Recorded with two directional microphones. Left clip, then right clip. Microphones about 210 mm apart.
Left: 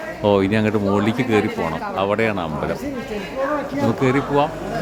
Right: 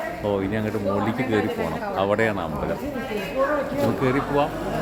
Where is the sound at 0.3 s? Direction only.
45° left (ahead or behind).